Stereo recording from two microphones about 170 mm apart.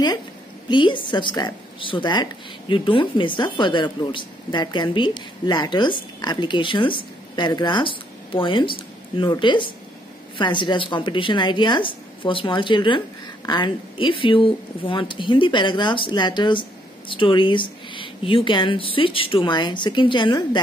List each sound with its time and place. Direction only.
0.7 s speech: 30° left (ahead or behind)